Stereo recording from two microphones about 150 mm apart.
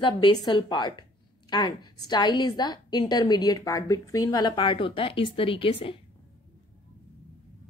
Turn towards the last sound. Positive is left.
turn(degrees=35)  # may be behind; listen again after turning